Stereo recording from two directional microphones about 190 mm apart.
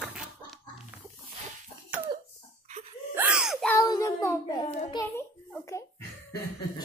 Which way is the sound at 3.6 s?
15° left (ahead or behind).